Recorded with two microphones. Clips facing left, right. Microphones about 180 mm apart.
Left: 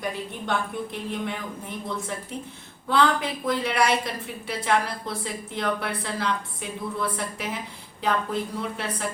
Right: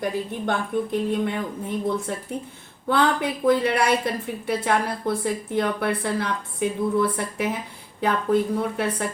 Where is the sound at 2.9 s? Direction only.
60° right (ahead or behind).